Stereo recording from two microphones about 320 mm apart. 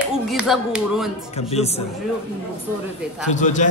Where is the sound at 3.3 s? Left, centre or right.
Left.